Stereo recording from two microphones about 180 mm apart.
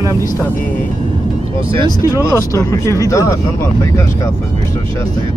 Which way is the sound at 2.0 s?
15° left (ahead or behind).